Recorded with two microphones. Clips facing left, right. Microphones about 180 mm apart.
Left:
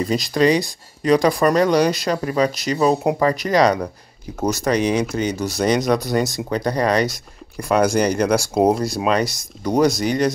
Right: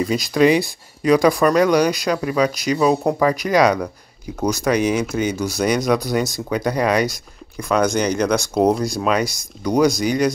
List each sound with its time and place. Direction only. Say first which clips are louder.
0.1 s speech: right 1 dB; centre (ahead or behind)
1.6 s speech: right 1 dB; 20° left (ahead or behind)
2.2 s speech: right 1 dB; centre (ahead or behind)